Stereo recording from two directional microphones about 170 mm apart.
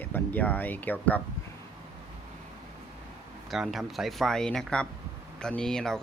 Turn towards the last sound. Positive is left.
turn(degrees=5)  # may be behind; listen again after turning